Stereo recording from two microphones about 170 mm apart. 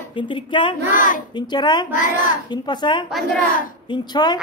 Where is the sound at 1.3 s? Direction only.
25° left (ahead or behind).